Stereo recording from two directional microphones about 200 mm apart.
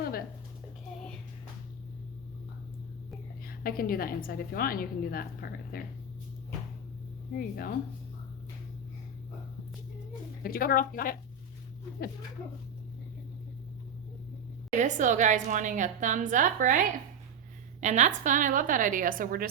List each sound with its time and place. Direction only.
3.4 s a woman's voice: 45° left (ahead or behind)
7.3 s a woman's voice: 50° left (ahead or behind)
10.4 s a woman's voice: 45° left (ahead or behind)
14.7 s a woman's voice: 35° right (ahead or behind)